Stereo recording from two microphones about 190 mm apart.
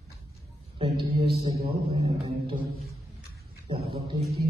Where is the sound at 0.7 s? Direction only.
30° right (ahead or behind).